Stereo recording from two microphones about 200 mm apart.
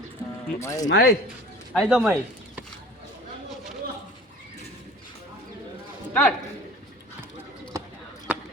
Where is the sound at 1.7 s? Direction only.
5° right (ahead or behind).